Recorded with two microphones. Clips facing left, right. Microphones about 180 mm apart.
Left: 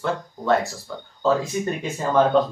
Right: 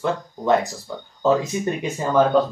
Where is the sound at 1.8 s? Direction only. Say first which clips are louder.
Right 1 dB; 10° right (ahead or behind).